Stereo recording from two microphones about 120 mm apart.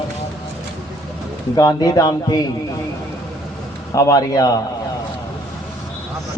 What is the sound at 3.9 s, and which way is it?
Speech, 30° left (ahead or behind).